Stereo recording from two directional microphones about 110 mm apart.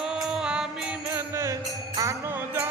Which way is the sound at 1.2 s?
25° right (ahead or behind).